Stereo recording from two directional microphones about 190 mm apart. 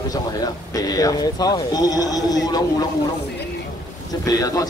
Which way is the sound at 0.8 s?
20° left (ahead or behind).